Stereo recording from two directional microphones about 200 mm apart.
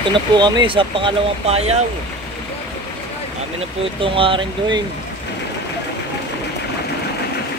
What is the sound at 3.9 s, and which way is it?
Speech, 25° right (ahead or behind).